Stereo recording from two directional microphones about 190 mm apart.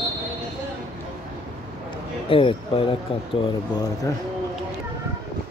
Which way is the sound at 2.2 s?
30° left (ahead or behind).